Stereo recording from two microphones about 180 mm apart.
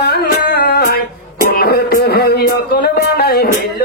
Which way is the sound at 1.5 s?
60° left (ahead or behind).